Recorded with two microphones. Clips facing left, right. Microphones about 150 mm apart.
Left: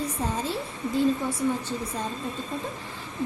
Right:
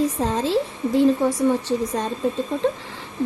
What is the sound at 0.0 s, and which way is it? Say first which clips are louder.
A woman's voice: right 8 dB; 90° right.